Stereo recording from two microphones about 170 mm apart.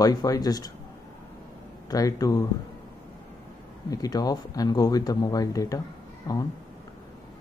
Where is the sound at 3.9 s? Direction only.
20° left (ahead or behind).